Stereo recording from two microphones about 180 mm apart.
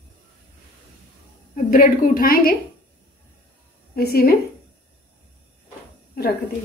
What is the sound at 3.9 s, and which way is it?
Speech, 60° left (ahead or behind).